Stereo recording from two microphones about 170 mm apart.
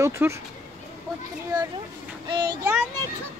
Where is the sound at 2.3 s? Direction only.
25° right (ahead or behind).